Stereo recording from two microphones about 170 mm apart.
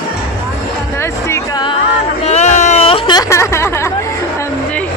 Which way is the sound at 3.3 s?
15° left (ahead or behind).